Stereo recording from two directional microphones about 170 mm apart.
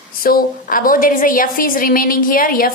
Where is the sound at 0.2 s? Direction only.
55° left (ahead or behind).